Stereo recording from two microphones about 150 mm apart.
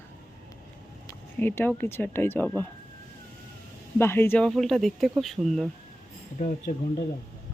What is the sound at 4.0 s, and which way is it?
Speech, 15° left (ahead or behind).